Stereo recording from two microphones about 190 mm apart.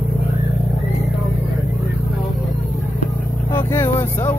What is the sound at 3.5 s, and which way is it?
Speech, 10° left (ahead or behind).